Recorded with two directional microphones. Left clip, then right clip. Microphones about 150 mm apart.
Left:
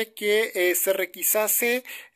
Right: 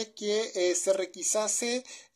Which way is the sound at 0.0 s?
10° left (ahead or behind).